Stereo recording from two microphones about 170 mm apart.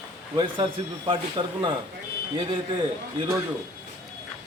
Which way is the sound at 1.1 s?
30° right (ahead or behind).